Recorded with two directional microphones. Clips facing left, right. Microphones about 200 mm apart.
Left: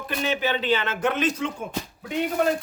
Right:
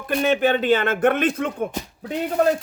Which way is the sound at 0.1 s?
50° right (ahead or behind).